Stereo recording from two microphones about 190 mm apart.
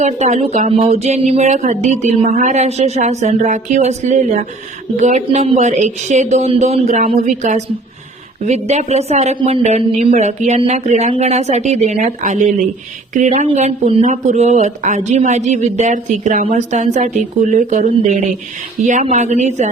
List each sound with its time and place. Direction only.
0.0 s speech: 35° right (ahead or behind)